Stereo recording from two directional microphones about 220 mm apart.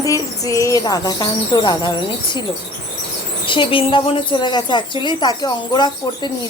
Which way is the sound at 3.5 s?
20° left (ahead or behind).